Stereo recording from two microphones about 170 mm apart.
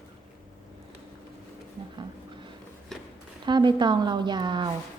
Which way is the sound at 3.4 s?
25° right (ahead or behind).